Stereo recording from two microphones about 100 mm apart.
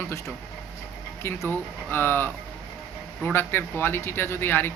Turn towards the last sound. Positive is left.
turn(degrees=20)  # may be behind; listen again after turning